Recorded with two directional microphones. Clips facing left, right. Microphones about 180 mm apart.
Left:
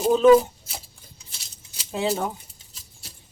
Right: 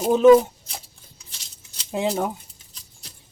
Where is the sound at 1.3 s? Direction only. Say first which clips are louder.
Even; 5° left (ahead or behind).